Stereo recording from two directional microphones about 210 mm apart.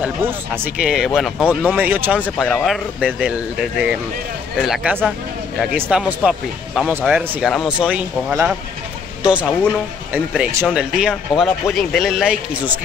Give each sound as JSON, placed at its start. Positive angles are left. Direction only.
{"t": 0.0, "sound": "speech", "side_deg": -10}
{"t": 1.8, "sound": "speech", "side_deg": -10}
{"t": 4.6, "sound": "speech", "side_deg": -5}